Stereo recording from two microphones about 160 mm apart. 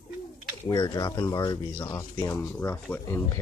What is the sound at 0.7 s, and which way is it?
Speech, 25° left (ahead or behind).